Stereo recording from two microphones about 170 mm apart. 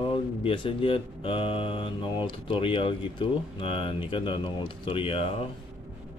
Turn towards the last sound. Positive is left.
turn(degrees=35)  # may be behind; listen again after turning